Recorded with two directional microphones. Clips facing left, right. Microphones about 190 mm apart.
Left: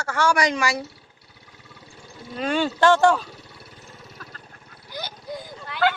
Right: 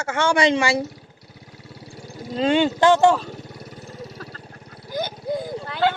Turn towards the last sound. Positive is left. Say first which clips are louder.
# right 6 dB
turn(degrees=-40)  # may be behind; listen again after turning